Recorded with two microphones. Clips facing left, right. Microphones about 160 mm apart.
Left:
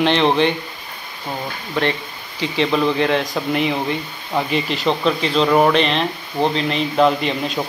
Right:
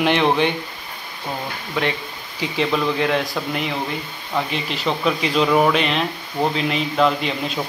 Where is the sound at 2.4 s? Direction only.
5° right (ahead or behind).